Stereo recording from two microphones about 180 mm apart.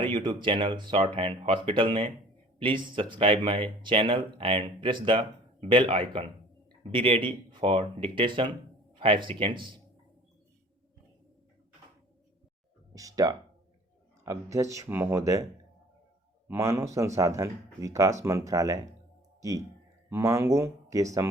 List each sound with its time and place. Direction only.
0.0 s speech: 30° right (ahead or behind)
12.9 s a sound: 20° right (ahead or behind)
14.3 s speech: 15° right (ahead or behind)
16.5 s speech: 15° right (ahead or behind)